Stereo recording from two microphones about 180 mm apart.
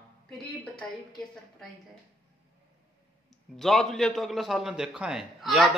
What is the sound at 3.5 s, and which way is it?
A man's voice, centre (ahead or behind).